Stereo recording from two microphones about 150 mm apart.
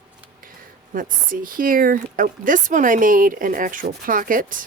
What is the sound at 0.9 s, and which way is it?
Speech, 65° right (ahead or behind).